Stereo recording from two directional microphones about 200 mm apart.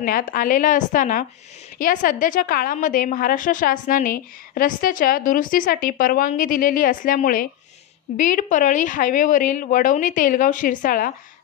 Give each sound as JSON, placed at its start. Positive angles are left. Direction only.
{"t": 0.0, "sound": "a woman's voice", "side_deg": 45}